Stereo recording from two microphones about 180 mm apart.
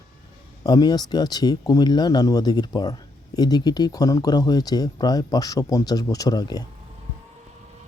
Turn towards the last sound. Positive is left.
turn(degrees=20)  # may be behind; listen again after turning